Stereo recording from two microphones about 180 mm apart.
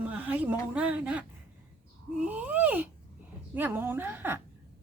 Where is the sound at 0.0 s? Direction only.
10° right (ahead or behind).